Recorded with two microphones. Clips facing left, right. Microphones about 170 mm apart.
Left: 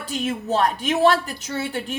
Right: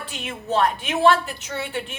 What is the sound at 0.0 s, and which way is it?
A woman's voice, 40° left (ahead or behind).